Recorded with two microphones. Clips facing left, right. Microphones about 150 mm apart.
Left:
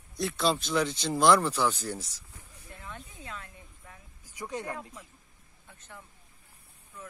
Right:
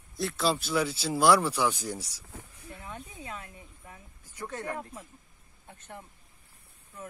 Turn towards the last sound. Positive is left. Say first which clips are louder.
# right 4 dB
turn(degrees=-55)  # may be behind; listen again after turning